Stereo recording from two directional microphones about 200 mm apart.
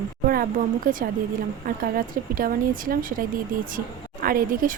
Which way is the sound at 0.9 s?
45° right (ahead or behind).